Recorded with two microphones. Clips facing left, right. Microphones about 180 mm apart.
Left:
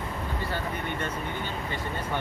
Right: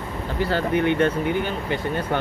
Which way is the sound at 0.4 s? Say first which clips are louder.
Right 15 dB; 80° right.